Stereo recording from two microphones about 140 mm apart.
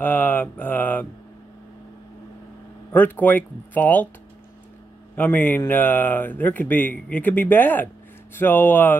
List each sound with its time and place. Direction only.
0.0 s mantra: 10° left (ahead or behind)
2.9 s speech: 10° left (ahead or behind)
5.1 s speech: 15° left (ahead or behind)